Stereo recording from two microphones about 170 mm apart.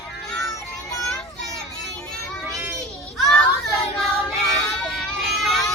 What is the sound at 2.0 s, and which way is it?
Children playing, 5° left (ahead or behind).